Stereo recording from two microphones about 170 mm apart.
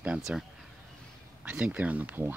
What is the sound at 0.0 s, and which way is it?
Speech, 5° right (ahead or behind).